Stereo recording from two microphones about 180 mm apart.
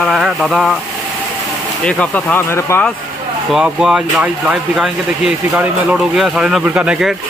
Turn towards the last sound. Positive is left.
turn(degrees=-5)  # may be behind; listen again after turning